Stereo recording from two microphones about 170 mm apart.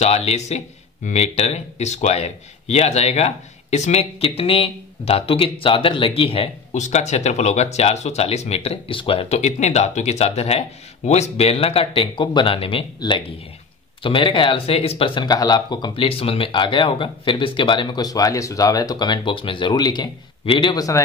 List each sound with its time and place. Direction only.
0.0 s speech: 40° left (ahead or behind); by 21.0 s 20° left (ahead or behind)